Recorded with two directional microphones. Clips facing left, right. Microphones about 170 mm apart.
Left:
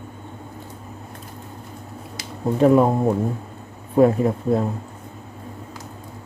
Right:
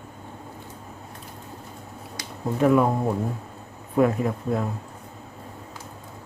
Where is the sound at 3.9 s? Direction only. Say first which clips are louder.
Left 5 dB; 30° left (ahead or behind).